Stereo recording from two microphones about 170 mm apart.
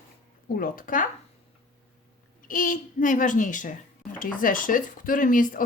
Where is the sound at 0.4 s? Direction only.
55° left (ahead or behind).